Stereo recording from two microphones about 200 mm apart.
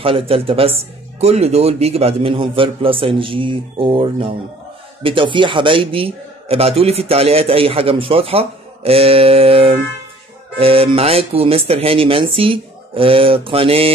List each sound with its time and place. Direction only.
0.0 s a man's voice: 30° right (ahead or behind)